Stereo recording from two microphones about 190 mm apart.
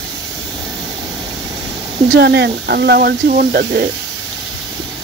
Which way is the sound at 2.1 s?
60° right (ahead or behind).